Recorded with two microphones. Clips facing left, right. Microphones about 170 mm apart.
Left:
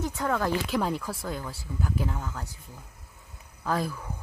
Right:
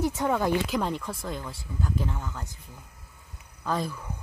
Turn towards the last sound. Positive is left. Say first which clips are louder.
# left 1 dB
turn(degrees=0)  # may be behind; listen again after turning